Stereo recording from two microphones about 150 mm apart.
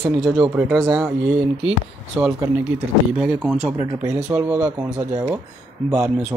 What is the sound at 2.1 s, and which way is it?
Speech, 15° right (ahead or behind).